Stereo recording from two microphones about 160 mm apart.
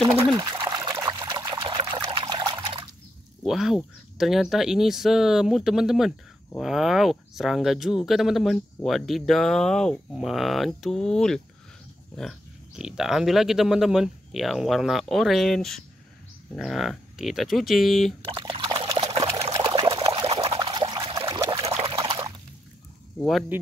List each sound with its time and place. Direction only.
0.4 s trickle: 25° right (ahead or behind)
3.4 s speech: centre (ahead or behind)
18.3 s liquid: 30° right (ahead or behind)
19.5 s pour: 25° right (ahead or behind)
21.5 s pour: 40° right (ahead or behind)
21.9 s liquid: 25° right (ahead or behind)
23.1 s speech: centre (ahead or behind)